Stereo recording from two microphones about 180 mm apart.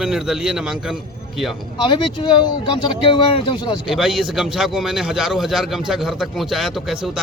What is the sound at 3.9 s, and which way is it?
A man's voice, centre (ahead or behind).